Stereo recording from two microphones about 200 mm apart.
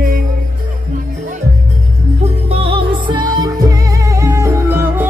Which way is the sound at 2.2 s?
30° right (ahead or behind).